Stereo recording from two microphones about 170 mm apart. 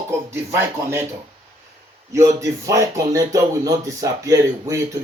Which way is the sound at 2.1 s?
15° right (ahead or behind).